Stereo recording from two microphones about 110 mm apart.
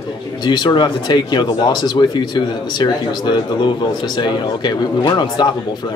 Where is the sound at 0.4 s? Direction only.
45° left (ahead or behind).